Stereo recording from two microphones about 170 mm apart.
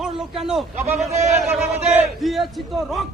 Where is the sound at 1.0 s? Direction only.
45° right (ahead or behind).